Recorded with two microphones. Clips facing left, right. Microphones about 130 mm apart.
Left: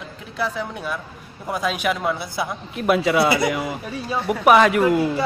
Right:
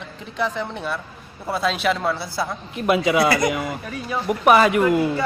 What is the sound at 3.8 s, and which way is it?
Speech, 25° left (ahead or behind).